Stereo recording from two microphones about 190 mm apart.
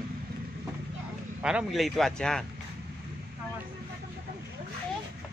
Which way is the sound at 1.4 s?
Centre (ahead or behind).